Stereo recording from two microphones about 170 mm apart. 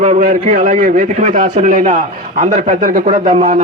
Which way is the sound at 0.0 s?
45° right (ahead or behind).